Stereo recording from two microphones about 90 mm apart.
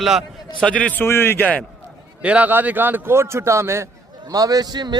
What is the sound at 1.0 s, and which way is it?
Speech, 25° left (ahead or behind).